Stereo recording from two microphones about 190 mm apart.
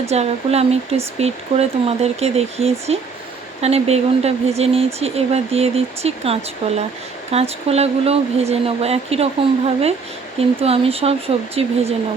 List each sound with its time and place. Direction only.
0.1 s speech: 35° right (ahead or behind)